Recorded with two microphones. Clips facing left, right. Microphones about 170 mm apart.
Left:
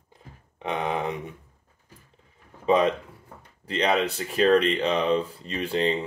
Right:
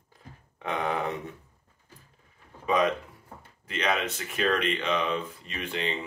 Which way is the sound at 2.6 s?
30° left (ahead or behind).